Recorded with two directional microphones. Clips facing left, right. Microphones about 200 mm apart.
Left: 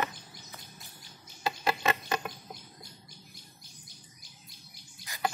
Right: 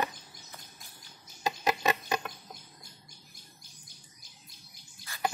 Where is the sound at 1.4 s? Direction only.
15° right (ahead or behind).